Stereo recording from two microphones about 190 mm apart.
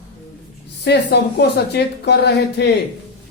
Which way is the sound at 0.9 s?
60° left (ahead or behind).